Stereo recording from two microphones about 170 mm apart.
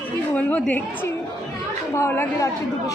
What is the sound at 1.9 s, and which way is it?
A woman's voice, 15° left (ahead or behind).